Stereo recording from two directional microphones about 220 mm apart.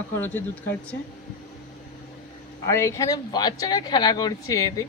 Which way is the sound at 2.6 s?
15° left (ahead or behind).